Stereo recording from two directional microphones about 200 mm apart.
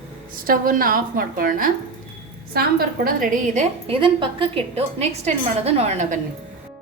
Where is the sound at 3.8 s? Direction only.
25° right (ahead or behind).